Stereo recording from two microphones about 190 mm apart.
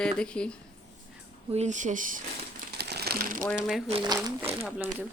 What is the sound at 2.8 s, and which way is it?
Crumpling, 60° right (ahead or behind).